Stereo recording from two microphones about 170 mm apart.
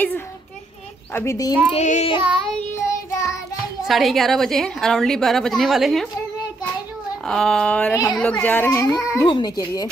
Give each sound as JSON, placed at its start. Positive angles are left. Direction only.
{"t": 1.1, "sound": "a child's voice", "side_deg": 15}
{"t": 1.7, "sound": "child singing", "side_deg": 40}
{"t": 2.5, "sound": "child singing", "side_deg": 15}
{"t": 3.8, "sound": "a woman's voice", "side_deg": 0}
{"t": 7.2, "sound": "a woman's voice", "side_deg": 5}
{"t": 7.9, "sound": "a child's voice", "side_deg": 20}
{"t": 8.2, "sound": "a child's voice", "side_deg": 10}